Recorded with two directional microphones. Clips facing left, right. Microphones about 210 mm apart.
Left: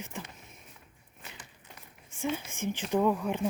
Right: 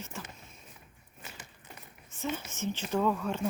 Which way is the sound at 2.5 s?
15° left (ahead or behind).